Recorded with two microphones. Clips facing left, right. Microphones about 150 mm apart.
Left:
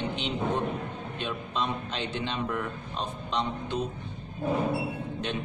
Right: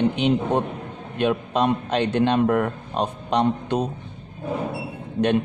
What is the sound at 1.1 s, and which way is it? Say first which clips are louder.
A man's voice: right 13 dB; 60° right (ahead or behind).